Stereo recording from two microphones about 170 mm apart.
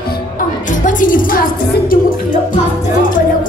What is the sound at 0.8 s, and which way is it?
A woman's voice, 50° left (ahead or behind).